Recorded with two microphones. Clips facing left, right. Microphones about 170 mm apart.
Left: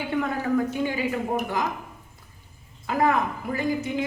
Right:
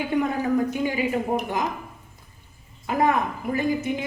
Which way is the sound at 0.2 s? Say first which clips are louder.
Right 1 dB; 15° right (ahead or behind).